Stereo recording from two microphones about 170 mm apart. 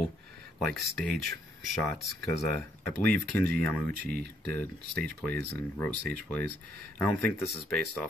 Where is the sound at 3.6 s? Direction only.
10° left (ahead or behind).